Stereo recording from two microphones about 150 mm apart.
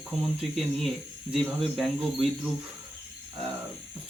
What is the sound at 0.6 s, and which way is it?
Cricket, centre (ahead or behind).